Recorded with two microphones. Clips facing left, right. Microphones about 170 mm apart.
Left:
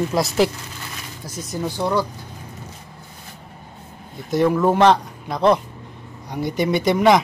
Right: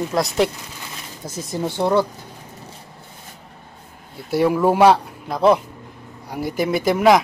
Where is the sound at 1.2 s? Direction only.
25° right (ahead or behind).